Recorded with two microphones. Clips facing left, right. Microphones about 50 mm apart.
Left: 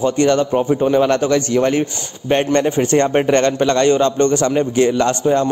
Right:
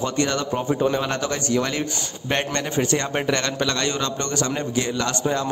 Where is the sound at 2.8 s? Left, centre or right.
Left.